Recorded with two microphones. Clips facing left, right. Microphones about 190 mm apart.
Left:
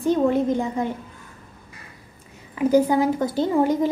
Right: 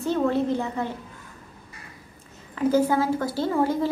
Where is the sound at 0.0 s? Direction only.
15° left (ahead or behind).